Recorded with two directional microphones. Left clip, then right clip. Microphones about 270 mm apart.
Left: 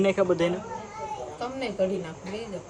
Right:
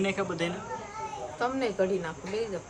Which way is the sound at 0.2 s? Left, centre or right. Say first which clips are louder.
Left 9 dB; left.